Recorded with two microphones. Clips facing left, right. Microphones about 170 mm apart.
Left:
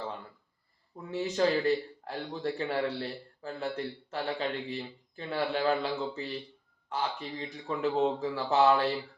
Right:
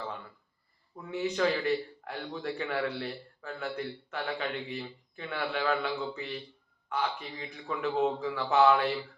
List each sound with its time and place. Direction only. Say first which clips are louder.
1.4 s a man's voice: left 3 dB; 30° left (ahead or behind)